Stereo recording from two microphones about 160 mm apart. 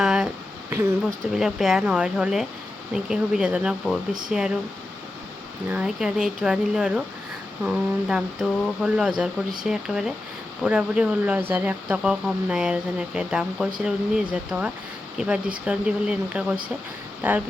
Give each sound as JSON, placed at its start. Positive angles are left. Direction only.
{"t": 0.0, "sound": "a sound", "side_deg": -5}
{"t": 0.7, "sound": "speech", "side_deg": -15}
{"t": 1.4, "sound": "speech", "side_deg": 0}
{"t": 5.6, "sound": "speech", "side_deg": -5}